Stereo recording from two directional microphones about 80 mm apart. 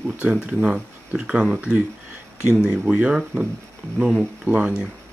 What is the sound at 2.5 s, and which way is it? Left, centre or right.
Speech, centre.